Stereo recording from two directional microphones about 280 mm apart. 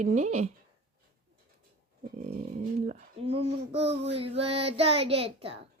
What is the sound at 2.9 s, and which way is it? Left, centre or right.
Child singing, right.